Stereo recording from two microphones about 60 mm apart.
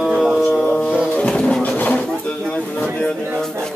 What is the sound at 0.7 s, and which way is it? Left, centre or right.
Music, left.